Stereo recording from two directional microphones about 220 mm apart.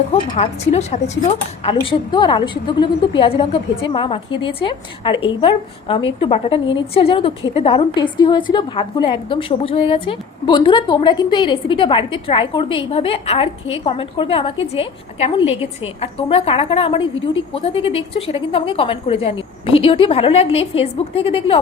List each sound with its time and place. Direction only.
0.1 s a woman's voice: 30° left (ahead or behind)